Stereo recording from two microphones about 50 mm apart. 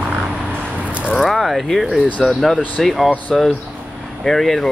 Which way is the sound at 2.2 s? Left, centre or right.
Centre.